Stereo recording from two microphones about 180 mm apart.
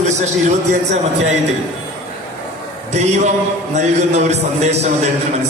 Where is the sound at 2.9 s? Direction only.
40° right (ahead or behind).